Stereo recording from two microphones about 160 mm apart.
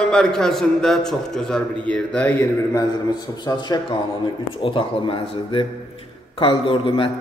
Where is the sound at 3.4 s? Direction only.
25° left (ahead or behind).